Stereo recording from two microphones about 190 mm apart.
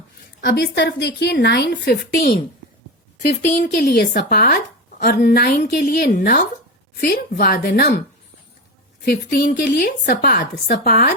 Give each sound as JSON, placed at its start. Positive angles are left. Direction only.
{"t": 0.4, "sound": "a woman's voice", "side_deg": 55}
{"t": 3.4, "sound": "a woman's voice", "side_deg": 40}
{"t": 9.0, "sound": "a woman's voice", "side_deg": 55}